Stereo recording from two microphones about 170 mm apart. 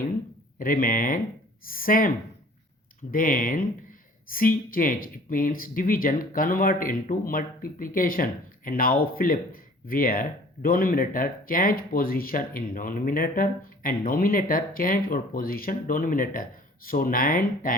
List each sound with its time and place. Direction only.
0.6 s speech: 55° left (ahead or behind)